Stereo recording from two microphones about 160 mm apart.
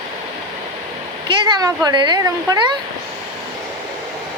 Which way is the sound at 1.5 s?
25° right (ahead or behind).